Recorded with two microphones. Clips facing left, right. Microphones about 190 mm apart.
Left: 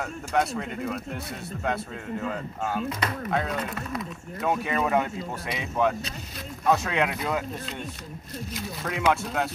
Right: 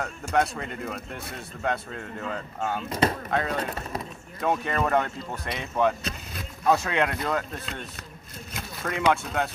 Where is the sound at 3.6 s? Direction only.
30° right (ahead or behind).